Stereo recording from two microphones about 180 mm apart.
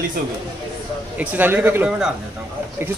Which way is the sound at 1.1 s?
10° right (ahead or behind).